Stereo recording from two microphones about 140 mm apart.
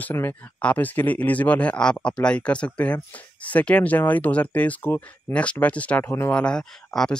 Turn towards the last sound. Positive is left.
turn(degrees=5)  # may be behind; listen again after turning